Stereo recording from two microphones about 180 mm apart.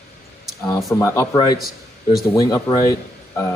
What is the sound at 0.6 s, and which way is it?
Speech, 15° left (ahead or behind).